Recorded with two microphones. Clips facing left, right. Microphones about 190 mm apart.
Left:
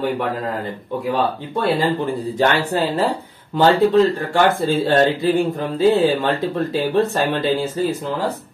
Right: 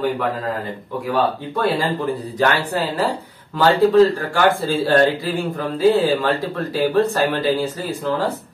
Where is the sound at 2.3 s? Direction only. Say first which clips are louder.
Left 2 dB; 25° left (ahead or behind).